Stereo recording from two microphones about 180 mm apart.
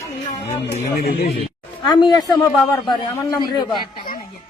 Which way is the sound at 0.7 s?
55° left (ahead or behind).